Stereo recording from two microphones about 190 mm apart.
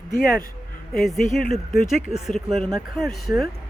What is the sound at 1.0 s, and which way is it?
Speech, centre (ahead or behind).